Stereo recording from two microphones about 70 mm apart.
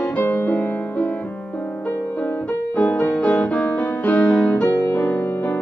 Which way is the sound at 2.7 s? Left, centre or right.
Centre.